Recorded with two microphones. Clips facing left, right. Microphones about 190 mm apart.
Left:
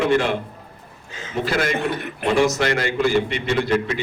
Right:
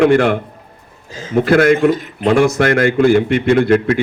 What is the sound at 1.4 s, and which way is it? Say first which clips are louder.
Speech: right 11 dB; 55° right (ahead or behind).